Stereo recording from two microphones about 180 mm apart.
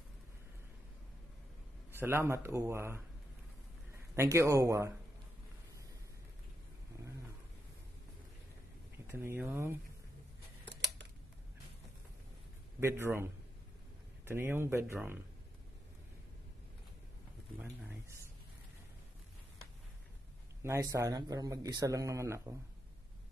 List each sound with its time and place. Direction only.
1.9 s speech: 10° right (ahead or behind)
9.0 s speech: 15° right (ahead or behind)
10.7 s a sound: 75° right (ahead or behind)
12.8 s speech: 15° right (ahead or behind)
17.6 s speech: 10° right (ahead or behind)
20.6 s speech: 15° right (ahead or behind)